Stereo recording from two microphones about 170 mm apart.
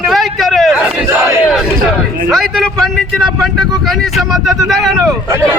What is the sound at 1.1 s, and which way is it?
Battle cry, 15° right (ahead or behind).